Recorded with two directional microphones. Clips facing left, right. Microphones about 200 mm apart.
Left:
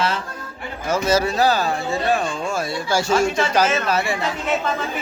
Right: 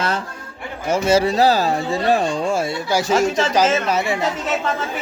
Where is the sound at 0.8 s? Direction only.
25° right (ahead or behind).